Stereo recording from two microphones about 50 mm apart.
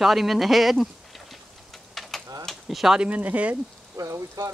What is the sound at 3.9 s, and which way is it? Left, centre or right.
Speech, right.